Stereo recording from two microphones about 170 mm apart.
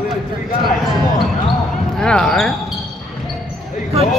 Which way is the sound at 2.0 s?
5° left (ahead or behind).